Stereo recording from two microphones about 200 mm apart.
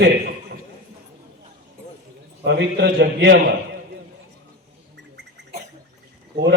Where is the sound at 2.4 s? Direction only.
60° right (ahead or behind).